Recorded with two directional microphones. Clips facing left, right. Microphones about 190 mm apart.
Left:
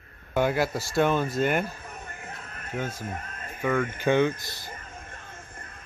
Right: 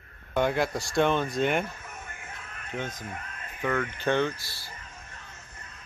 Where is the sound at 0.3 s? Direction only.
5° left (ahead or behind).